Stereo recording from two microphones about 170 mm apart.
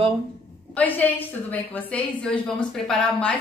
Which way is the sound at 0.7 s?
10° left (ahead or behind).